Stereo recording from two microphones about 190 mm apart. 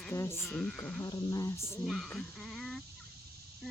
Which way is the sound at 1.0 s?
20° left (ahead or behind).